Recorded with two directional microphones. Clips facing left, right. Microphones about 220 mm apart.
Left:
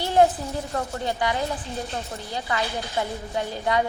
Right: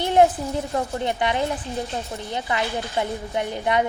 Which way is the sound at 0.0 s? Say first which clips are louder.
Right 2 dB; 15° right (ahead or behind).